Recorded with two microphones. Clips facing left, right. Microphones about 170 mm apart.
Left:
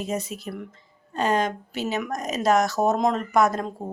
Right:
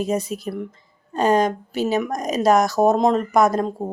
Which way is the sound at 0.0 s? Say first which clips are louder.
Right 6 dB; 35° right (ahead or behind).